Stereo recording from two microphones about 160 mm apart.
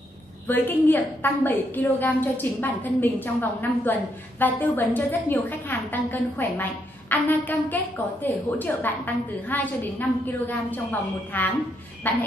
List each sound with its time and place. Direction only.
0.5 s a woman's voice: 10° left (ahead or behind)